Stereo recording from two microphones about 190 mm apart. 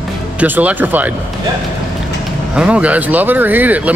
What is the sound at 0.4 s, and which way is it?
Speech, 10° right (ahead or behind).